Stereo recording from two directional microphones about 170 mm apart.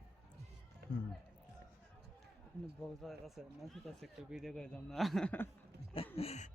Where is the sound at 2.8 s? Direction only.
Centre (ahead or behind).